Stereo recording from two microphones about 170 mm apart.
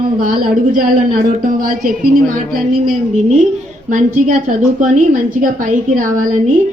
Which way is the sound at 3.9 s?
50° right (ahead or behind).